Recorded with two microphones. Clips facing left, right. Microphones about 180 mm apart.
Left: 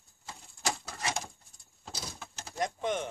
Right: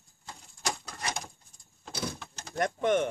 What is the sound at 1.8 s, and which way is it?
Bird, 60° right (ahead or behind).